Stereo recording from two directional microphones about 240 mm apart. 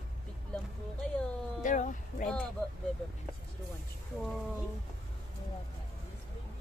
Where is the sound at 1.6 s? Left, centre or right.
Left.